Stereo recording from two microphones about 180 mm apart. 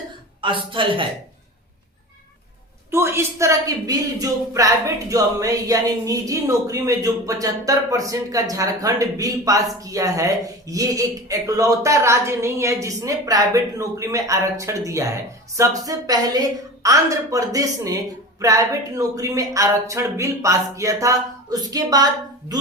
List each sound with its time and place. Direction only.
0.4 s a woman's voice: 30° right (ahead or behind)
2.9 s a woman's voice: 15° right (ahead or behind)